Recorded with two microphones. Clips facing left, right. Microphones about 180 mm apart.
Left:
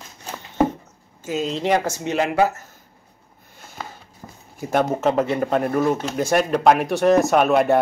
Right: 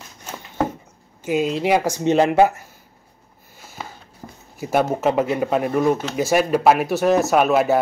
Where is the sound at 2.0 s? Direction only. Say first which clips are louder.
Right 9 dB; 30° right (ahead or behind).